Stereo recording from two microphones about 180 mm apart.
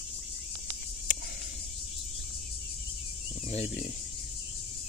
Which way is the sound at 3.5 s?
40° left (ahead or behind).